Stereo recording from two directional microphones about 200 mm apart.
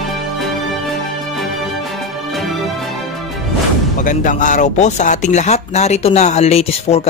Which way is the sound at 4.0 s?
40° left (ahead or behind).